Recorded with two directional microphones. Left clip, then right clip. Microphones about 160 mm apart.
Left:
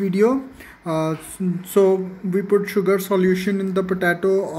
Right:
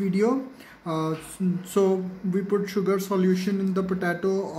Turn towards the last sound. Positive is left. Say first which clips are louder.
# left 7 dB
turn(degrees=25)  # may be behind; listen again after turning